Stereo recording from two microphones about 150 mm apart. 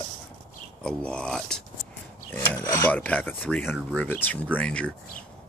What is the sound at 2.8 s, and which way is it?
Speech, 10° left (ahead or behind).